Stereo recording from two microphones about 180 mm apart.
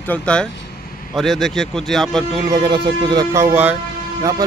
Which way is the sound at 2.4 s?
20° right (ahead or behind).